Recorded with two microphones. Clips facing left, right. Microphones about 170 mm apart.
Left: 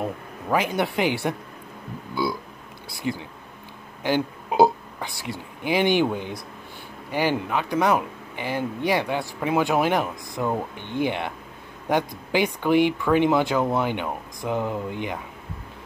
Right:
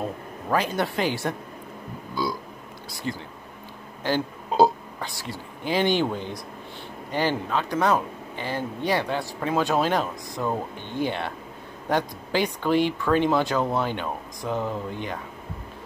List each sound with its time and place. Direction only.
0.0 s speech: 15° left (ahead or behind)
3.1 s speech: 15° left (ahead or behind)